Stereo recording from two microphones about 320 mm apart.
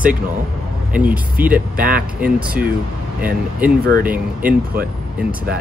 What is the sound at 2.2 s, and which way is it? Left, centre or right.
Speech, centre.